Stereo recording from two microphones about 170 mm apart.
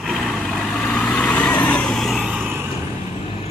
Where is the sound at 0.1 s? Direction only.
Centre (ahead or behind).